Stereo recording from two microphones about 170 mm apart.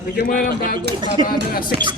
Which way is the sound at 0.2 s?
55° left (ahead or behind).